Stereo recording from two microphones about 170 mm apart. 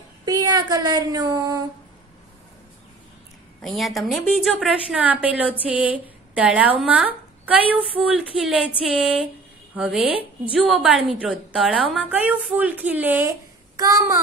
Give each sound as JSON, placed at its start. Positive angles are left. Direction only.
{"t": 0.2, "sound": "speech", "side_deg": -20}
{"t": 3.6, "sound": "a woman's voice", "side_deg": 0}
{"t": 8.4, "sound": "a sound", "side_deg": -5}
{"t": 9.8, "sound": "a woman's voice", "side_deg": -5}
{"t": 10.8, "sound": "a sound", "side_deg": 0}
{"t": 12.1, "sound": "a woman's voice", "side_deg": -10}
{"t": 13.7, "sound": "a child's voice", "side_deg": -20}